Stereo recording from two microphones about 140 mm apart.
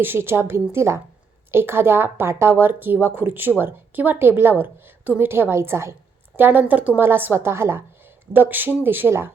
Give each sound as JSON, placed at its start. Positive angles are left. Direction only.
{"t": 0.0, "sound": "a woman's voice", "side_deg": -15}